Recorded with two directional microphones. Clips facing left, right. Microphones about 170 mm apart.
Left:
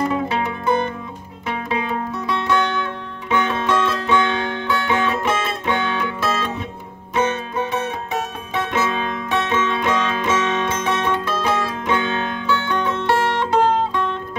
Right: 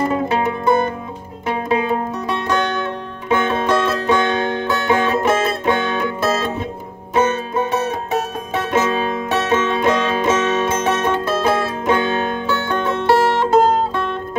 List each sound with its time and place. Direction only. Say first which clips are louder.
0.1 s music: right 3 dB; 45° right (ahead or behind)